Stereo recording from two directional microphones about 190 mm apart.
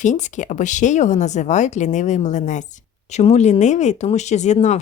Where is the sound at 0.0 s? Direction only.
40° left (ahead or behind).